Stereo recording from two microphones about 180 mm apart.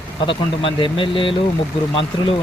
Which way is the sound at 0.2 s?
30° left (ahead or behind).